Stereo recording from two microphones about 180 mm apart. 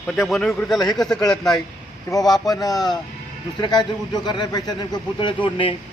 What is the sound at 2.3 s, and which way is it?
Speech, 20° left (ahead or behind).